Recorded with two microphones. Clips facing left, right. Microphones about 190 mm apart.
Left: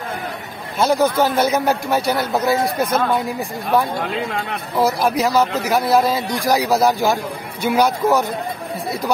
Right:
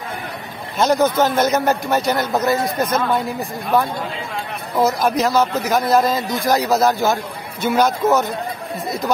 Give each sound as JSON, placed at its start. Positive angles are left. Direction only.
{"t": 0.7, "sound": "a man's voice", "side_deg": 10}
{"t": 4.7, "sound": "a man's voice", "side_deg": 5}